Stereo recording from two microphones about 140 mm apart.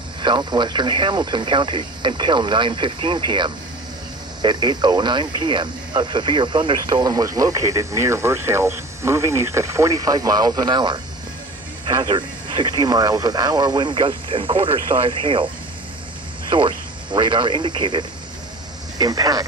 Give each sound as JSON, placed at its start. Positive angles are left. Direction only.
{"t": 0.2, "sound": "speech", "side_deg": -35}
{"t": 16.5, "sound": "speech", "side_deg": -35}